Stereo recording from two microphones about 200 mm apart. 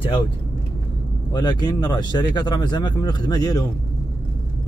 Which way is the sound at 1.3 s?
20° left (ahead or behind).